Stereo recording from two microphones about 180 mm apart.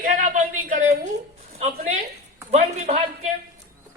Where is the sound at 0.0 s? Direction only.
45° right (ahead or behind).